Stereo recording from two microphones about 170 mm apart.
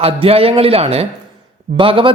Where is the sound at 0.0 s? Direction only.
35° right (ahead or behind).